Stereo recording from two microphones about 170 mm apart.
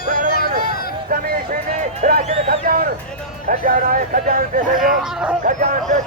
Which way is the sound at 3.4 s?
55° right (ahead or behind).